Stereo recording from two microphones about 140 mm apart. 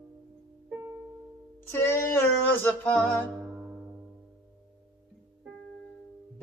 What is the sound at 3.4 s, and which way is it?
Music, 10° right (ahead or behind).